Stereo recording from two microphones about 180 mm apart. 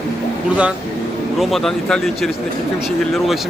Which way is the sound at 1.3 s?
Centre (ahead or behind).